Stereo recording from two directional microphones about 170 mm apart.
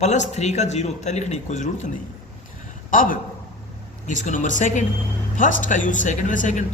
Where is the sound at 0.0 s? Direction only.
45° left (ahead or behind).